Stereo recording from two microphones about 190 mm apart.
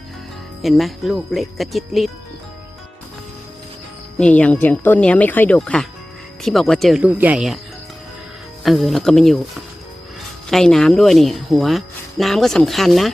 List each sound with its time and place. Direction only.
0.6 s speech: centre (ahead or behind)
4.2 s speech: 5° left (ahead or behind)
8.6 s speech: centre (ahead or behind)